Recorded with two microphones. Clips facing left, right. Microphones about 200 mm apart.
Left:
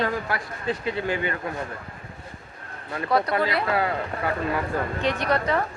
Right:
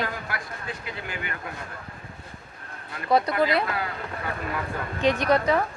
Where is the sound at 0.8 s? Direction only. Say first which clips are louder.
Left 9 dB; 30° left (ahead or behind).